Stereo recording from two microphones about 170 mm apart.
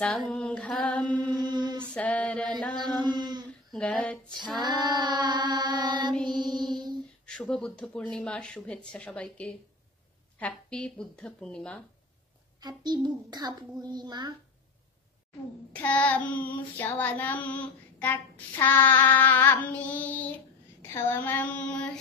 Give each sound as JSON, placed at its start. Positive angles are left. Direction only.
{"t": 0.3, "sound": "child singing", "side_deg": 5}
{"t": 1.2, "sound": "mantra", "side_deg": -25}
{"t": 2.0, "sound": "a sound", "side_deg": 5}
{"t": 2.7, "sound": "chant", "side_deg": -25}
{"t": 3.4, "sound": "a sound", "side_deg": 5}
{"t": 4.6, "sound": "child singing", "side_deg": -25}
{"t": 6.2, "sound": "music", "side_deg": -25}
{"t": 7.2, "sound": "speech", "side_deg": 5}
{"t": 12.5, "sound": "a child's voice", "side_deg": -25}
{"t": 15.7, "sound": "child singing", "side_deg": 10}